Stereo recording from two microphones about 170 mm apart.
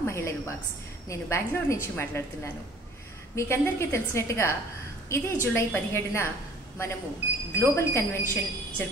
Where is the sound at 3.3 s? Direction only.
15° left (ahead or behind).